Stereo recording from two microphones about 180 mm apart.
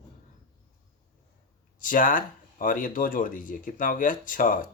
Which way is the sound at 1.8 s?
50° left (ahead or behind).